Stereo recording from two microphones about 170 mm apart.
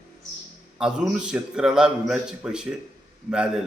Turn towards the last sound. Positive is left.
turn(degrees=-5)  # may be behind; listen again after turning